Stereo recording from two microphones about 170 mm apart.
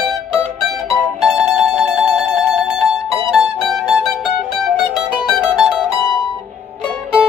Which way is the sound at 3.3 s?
Centre (ahead or behind).